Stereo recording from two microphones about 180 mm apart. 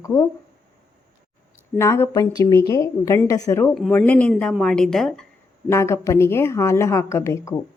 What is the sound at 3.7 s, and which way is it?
A woman's voice, 5° left (ahead or behind).